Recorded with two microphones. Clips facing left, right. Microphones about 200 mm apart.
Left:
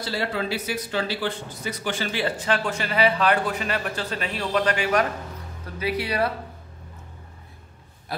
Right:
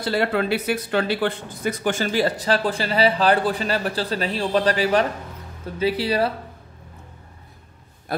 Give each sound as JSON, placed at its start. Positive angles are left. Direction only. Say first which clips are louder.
{"t": 0.0, "sound": "a man's voice", "louder": "right 6 dB", "side_deg": -55}